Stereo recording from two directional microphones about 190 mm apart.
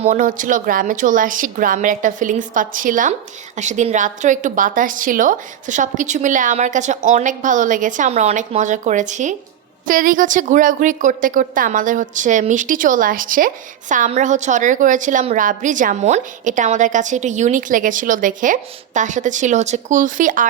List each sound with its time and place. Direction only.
0.0 s a woman's voice: 45° right (ahead or behind)